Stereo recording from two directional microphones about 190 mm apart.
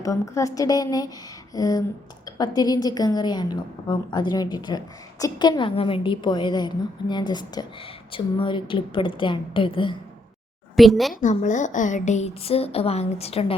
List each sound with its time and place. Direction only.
0.0 s a woman's voice: 15° left (ahead or behind)
10.8 s a woman's voice: centre (ahead or behind)
11.1 s a woman's voice: 40° left (ahead or behind)